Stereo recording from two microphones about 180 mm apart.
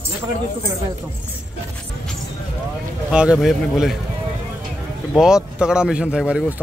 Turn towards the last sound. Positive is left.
turn(degrees=-5)  # may be behind; listen again after turning